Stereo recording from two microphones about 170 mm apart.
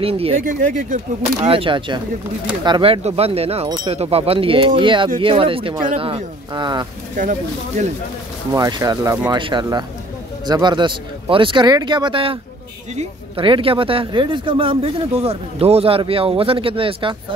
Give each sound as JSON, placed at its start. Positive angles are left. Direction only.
{"t": 0.0, "sound": "speech", "side_deg": -35}
{"t": 0.5, "sound": "speech", "side_deg": -50}
{"t": 1.4, "sound": "speech", "side_deg": -30}
{"t": 3.6, "sound": "speech", "side_deg": -25}
{"t": 3.9, "sound": "speech", "side_deg": -35}
{"t": 7.2, "sound": "speech", "side_deg": -45}
{"t": 8.5, "sound": "speech", "side_deg": -25}